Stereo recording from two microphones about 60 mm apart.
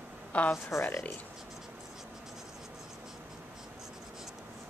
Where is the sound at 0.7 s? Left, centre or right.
Left.